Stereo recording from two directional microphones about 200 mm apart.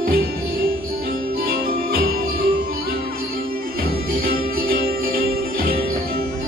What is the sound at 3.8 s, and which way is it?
Music, 45° right (ahead or behind).